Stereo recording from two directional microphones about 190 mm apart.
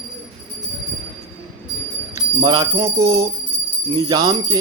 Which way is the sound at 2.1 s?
20° right (ahead or behind).